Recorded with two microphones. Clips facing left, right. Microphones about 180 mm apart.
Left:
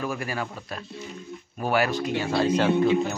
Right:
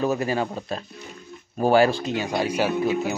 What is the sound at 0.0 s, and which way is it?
Speech, 25° right (ahead or behind).